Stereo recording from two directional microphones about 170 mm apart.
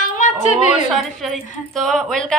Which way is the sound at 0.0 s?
45° left (ahead or behind).